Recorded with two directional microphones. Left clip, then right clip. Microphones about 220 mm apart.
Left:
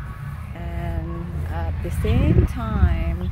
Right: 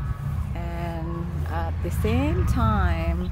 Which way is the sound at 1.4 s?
Centre (ahead or behind).